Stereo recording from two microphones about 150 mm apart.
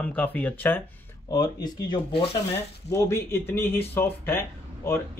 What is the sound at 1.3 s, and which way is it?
Speech, 25° left (ahead or behind).